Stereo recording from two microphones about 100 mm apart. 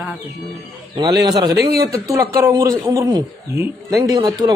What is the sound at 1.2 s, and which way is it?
A man's voice, 40° right (ahead or behind).